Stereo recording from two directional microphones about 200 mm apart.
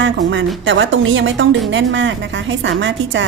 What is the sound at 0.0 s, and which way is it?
A woman's voice, 65° right (ahead or behind).